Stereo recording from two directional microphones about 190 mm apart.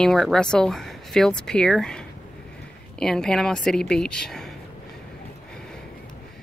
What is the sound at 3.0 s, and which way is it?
Speech, 5° left (ahead or behind).